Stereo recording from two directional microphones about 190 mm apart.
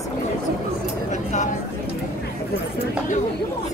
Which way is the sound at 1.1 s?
40° left (ahead or behind).